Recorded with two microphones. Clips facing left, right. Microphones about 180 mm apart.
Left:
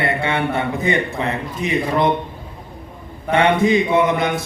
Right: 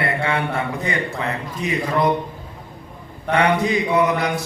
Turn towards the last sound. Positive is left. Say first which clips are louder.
# left 2 dB
turn(degrees=25)  # may be behind; listen again after turning